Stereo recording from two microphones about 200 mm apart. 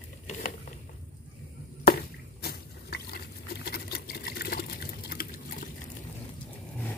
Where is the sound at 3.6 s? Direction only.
50° left (ahead or behind).